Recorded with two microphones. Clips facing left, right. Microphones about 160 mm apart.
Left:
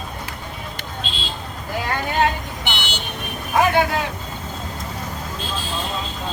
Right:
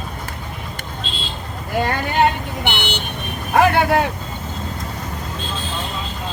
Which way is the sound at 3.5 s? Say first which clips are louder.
Right 3 dB; 60° right (ahead or behind).